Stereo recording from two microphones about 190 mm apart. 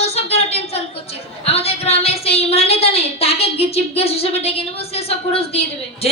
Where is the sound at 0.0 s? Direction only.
35° left (ahead or behind).